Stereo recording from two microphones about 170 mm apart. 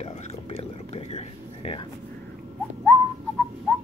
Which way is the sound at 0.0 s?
35° left (ahead or behind).